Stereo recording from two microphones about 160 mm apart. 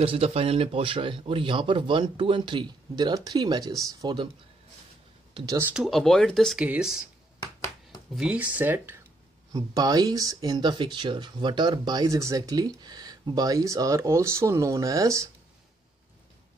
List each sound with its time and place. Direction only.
0.0 s speech: 35° right (ahead or behind)
5.3 s speech: 25° right (ahead or behind)
5.6 s speech: 10° right (ahead or behind)
5.9 s speech: centre (ahead or behind)
8.2 s speech: 10° right (ahead or behind)
9.5 s speech: 25° right (ahead or behind)